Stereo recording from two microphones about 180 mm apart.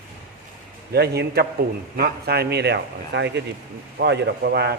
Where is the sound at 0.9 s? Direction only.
65° right (ahead or behind).